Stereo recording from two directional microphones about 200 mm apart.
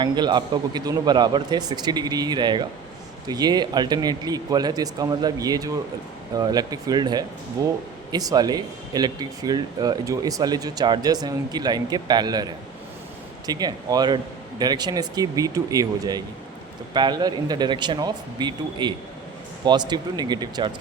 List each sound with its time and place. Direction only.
0.0 s speech: 20° right (ahead or behind)